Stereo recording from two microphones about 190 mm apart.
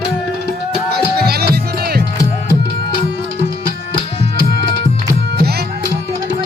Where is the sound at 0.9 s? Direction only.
55° right (ahead or behind).